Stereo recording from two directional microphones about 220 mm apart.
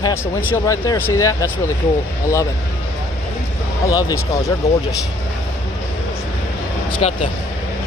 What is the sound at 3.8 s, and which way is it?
Speech, 15° left (ahead or behind).